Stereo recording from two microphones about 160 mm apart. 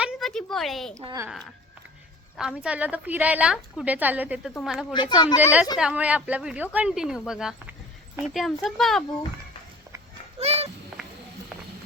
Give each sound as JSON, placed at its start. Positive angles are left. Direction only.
{"t": 0.0, "sound": "a sound", "side_deg": 0}
{"t": 1.0, "sound": "speech", "side_deg": -20}
{"t": 2.4, "sound": "a woman's voice", "side_deg": -5}
{"t": 4.9, "sound": "speech", "side_deg": 30}
{"t": 5.4, "sound": "a woman's voice", "side_deg": -10}
{"t": 10.4, "sound": "a sound", "side_deg": -40}